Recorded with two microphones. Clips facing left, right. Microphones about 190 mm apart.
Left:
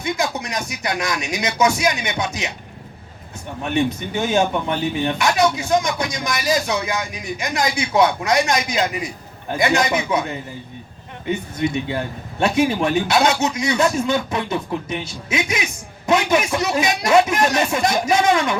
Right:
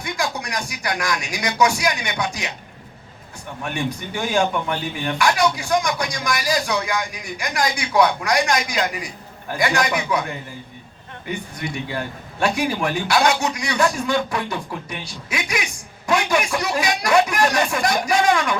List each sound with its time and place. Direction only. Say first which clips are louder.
0.0 s speech: left 3 dB; 20° left (ahead or behind)
3.6 s speech: left 6 dB; 20° left (ahead or behind)